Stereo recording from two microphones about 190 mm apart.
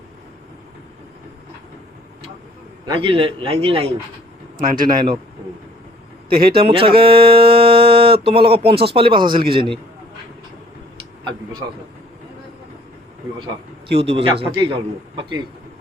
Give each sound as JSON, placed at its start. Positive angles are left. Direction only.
{"t": 2.8, "sound": "a man's voice", "side_deg": -25}
{"t": 4.5, "sound": "speech", "side_deg": -50}
{"t": 6.2, "sound": "a man's voice", "side_deg": -50}
{"t": 6.6, "sound": "a man's voice", "side_deg": -30}
{"t": 13.4, "sound": "a man's voice", "side_deg": -30}